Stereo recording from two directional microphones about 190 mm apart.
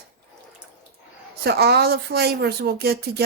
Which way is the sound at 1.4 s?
60° right (ahead or behind).